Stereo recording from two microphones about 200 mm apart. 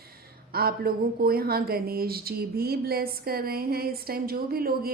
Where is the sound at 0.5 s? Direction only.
50° right (ahead or behind).